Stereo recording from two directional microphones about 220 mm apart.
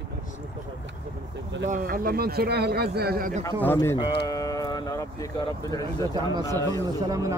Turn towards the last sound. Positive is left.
turn(degrees=-15)  # may be behind; listen again after turning